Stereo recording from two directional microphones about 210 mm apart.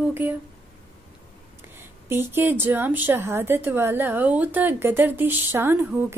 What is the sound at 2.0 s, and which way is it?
A woman's voice, 10° right (ahead or behind).